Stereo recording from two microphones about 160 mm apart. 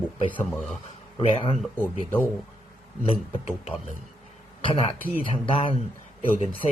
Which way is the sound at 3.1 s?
40° left (ahead or behind).